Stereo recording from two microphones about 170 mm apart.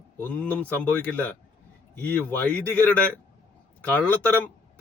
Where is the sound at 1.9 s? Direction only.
10° left (ahead or behind).